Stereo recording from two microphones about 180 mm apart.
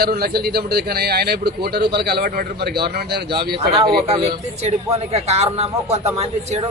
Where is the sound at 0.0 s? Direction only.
60° right (ahead or behind).